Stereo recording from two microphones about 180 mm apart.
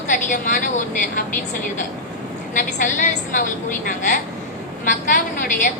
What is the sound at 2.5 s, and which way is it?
A woman's voice, 45° left (ahead or behind).